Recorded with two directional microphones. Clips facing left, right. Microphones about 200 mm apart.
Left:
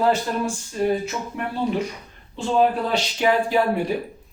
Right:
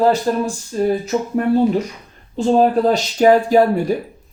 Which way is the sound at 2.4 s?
40° right (ahead or behind).